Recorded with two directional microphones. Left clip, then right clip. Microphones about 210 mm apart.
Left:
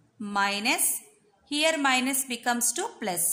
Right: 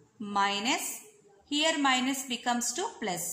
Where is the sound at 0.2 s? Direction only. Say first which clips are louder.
Left 2 dB; 25° left (ahead or behind).